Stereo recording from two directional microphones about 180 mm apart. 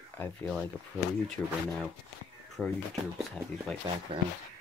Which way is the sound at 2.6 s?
10° left (ahead or behind).